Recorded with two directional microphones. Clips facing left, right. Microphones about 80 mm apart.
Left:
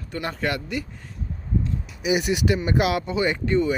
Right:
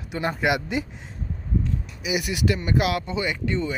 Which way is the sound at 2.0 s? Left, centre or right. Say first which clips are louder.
Left 3 dB; left.